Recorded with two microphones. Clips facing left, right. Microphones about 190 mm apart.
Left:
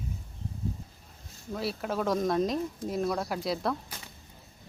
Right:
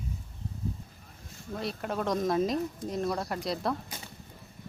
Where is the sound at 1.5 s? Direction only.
Centre (ahead or behind).